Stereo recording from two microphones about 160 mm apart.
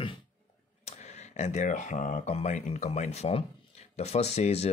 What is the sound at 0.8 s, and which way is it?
Speech, 45° left (ahead or behind).